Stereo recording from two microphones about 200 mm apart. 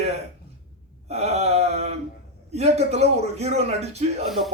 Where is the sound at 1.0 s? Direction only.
30° right (ahead or behind).